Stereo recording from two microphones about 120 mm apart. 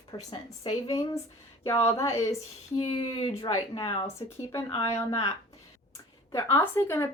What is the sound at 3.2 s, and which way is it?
Speech, 35° left (ahead or behind).